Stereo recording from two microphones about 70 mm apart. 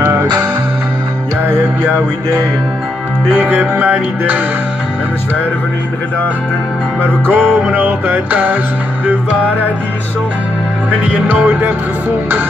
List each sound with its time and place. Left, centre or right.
0.0 s music: right
1.4 s music: right
3.3 s music: right
7.0 s music: right
10.9 s music: right